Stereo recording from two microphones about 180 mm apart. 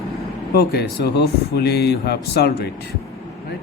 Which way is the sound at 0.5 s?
60° left (ahead or behind).